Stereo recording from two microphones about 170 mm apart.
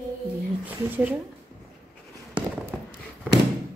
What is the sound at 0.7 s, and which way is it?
Speech, 10° right (ahead or behind).